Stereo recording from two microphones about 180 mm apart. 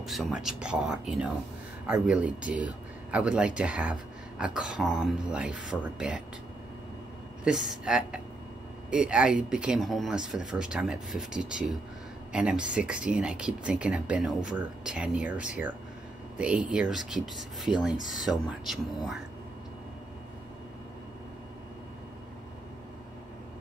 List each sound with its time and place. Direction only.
0.0 s speech: centre (ahead or behind)
7.4 s speech: 5° right (ahead or behind)